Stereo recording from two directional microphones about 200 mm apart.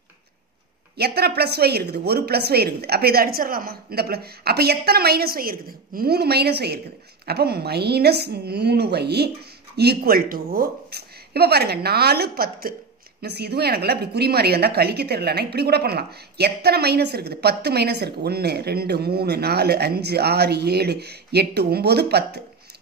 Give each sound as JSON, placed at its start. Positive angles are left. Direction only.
{"t": 0.9, "sound": "a woman's voice", "side_deg": -55}